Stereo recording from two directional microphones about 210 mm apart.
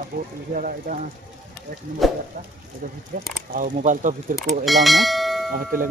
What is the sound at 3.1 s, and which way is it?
Speech, 40° right (ahead or behind).